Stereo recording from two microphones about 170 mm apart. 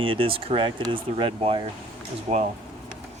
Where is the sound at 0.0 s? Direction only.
30° right (ahead or behind).